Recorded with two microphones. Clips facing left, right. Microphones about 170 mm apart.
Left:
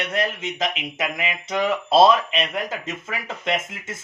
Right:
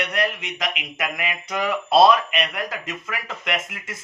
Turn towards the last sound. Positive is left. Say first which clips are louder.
# left 2 dB
turn(degrees=25)  # may be behind; listen again after turning